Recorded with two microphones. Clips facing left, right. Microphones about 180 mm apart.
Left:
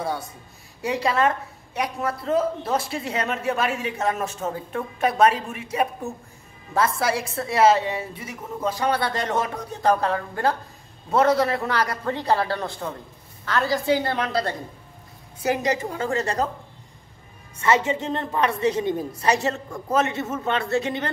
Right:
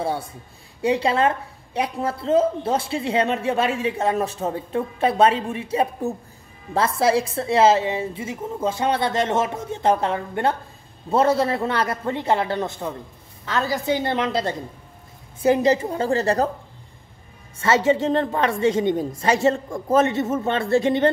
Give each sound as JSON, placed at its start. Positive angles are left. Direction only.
{"t": 0.0, "sound": "a woman's voice", "side_deg": -30}
{"t": 17.6, "sound": "a woman's voice", "side_deg": -25}